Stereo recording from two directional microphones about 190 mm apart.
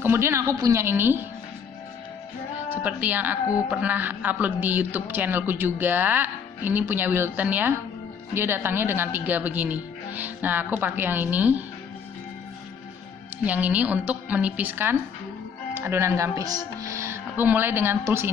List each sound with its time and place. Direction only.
0.0 s a woman's voice: 15° right (ahead or behind)
2.7 s a woman's voice: 10° right (ahead or behind)
13.4 s a woman's voice: 10° right (ahead or behind)